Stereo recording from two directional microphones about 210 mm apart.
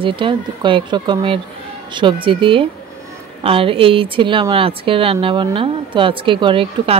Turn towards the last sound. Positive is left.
turn(degrees=-25)  # may be behind; listen again after turning